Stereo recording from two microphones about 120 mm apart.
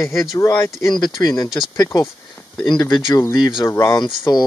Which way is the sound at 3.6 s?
25° left (ahead or behind).